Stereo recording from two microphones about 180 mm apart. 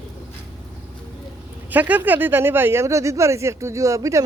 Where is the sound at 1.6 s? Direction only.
10° right (ahead or behind).